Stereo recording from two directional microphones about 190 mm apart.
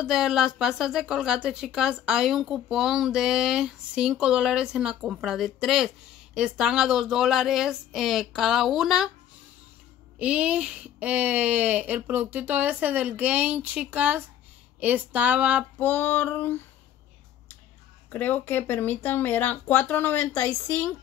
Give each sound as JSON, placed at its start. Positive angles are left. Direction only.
{"t": 0.0, "sound": "a woman's voice", "side_deg": 0}
{"t": 10.1, "sound": "speech", "side_deg": -5}
{"t": 15.8, "sound": "speech", "side_deg": 10}
{"t": 18.1, "sound": "speech", "side_deg": 10}